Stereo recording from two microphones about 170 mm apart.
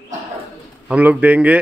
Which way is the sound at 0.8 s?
5° right (ahead or behind).